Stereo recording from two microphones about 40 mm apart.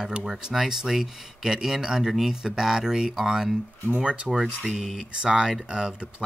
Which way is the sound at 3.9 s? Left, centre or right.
Right.